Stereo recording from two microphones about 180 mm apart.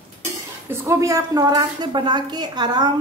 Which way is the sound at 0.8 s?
15° right (ahead or behind).